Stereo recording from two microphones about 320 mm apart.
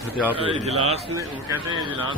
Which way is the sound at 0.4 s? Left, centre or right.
Centre.